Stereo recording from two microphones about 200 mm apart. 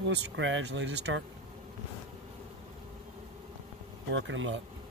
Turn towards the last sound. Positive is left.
turn(degrees=-70)  # may be behind; listen again after turning